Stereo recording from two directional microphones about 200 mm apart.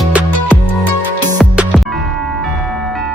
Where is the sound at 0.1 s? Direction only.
5° right (ahead or behind).